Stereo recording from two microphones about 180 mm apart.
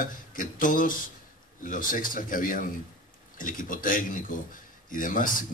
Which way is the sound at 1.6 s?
50° left (ahead or behind).